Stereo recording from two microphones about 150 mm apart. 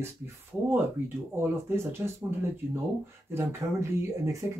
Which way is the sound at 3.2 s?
15° right (ahead or behind).